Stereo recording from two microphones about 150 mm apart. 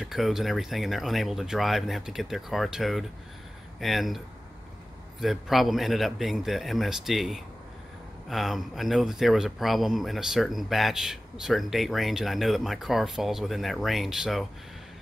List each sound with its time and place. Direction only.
0.0 s speech: centre (ahead or behind)
5.2 s speech: centre (ahead or behind)